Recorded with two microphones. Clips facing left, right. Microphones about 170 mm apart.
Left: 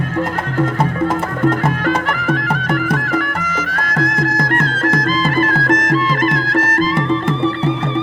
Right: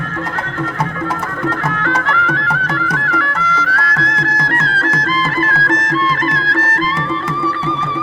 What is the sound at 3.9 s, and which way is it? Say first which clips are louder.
Music: left 3 dB; 45° left (ahead or behind).